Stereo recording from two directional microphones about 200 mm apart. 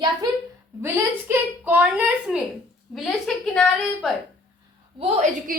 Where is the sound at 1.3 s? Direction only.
10° right (ahead or behind).